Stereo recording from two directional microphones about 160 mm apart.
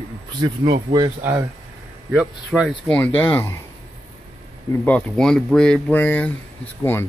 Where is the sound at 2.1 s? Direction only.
5° right (ahead or behind).